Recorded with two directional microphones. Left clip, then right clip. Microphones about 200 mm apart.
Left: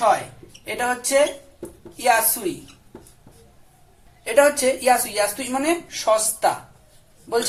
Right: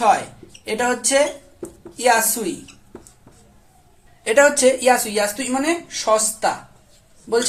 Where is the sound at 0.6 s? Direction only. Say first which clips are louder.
Right 3 dB; 35° right (ahead or behind).